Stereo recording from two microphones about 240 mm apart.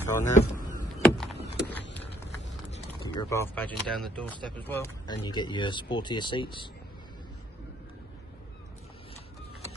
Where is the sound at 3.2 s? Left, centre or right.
Centre.